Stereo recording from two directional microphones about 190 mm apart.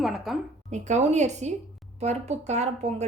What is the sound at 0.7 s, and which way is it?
Speech, 40° right (ahead or behind).